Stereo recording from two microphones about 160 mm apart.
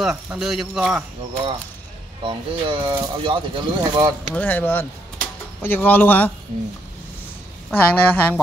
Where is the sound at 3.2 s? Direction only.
30° right (ahead or behind).